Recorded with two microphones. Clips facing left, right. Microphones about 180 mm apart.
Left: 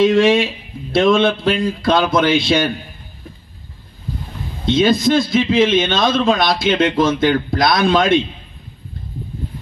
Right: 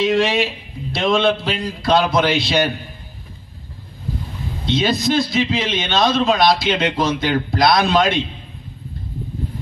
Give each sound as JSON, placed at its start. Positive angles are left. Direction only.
{"t": 0.0, "sound": "a man's voice", "side_deg": 50}
{"t": 4.6, "sound": "a man's voice", "side_deg": 50}